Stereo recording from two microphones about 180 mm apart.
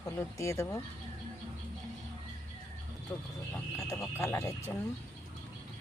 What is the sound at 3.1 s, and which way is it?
Speech, 15° left (ahead or behind).